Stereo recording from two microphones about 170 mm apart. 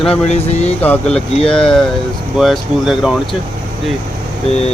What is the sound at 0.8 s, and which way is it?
Speech, 10° left (ahead or behind).